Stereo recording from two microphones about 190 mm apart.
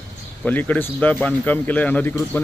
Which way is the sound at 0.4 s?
10° left (ahead or behind).